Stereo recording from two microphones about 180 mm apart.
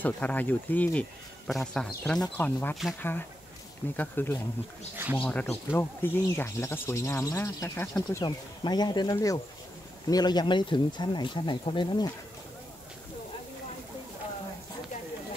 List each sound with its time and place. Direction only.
0.0 s a man's voice: 10° left (ahead or behind)
4.9 s speech: 10° right (ahead or behind)
5.2 s speech: 10° left (ahead or behind); by 12.1 s 25° left (ahead or behind)